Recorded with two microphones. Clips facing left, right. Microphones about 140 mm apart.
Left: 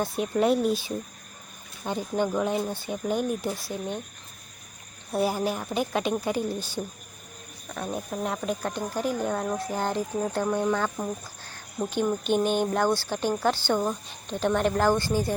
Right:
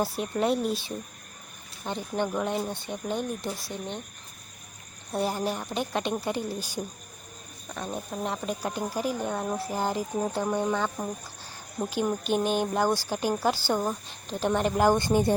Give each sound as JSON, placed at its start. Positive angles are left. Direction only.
{"t": 0.0, "sound": "speech", "side_deg": 0}
{"t": 5.1, "sound": "speech", "side_deg": 5}
{"t": 6.6, "sound": "speech", "side_deg": -10}
{"t": 7.7, "sound": "speech", "side_deg": 5}
{"t": 14.8, "sound": "a woman's voice", "side_deg": -20}